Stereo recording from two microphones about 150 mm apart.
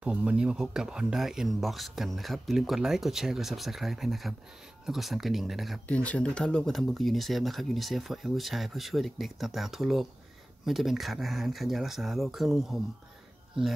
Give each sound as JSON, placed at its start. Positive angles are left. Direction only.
{"t": 0.0, "sound": "speech", "side_deg": -10}